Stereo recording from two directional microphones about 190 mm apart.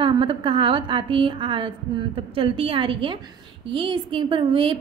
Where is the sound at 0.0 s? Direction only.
25° right (ahead or behind).